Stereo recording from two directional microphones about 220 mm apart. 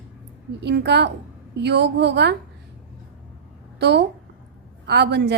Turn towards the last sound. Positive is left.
turn(degrees=-50)  # may be behind; listen again after turning